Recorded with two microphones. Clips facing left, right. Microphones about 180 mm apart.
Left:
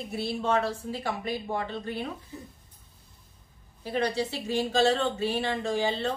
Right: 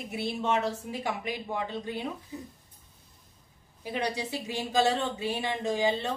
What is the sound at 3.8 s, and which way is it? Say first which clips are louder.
A woman's voice: left 4 dB; 15° right (ahead or behind).